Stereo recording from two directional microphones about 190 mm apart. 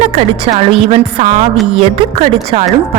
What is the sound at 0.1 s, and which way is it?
Speech, 35° right (ahead or behind).